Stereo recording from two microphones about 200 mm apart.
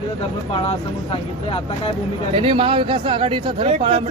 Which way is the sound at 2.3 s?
25° right (ahead or behind).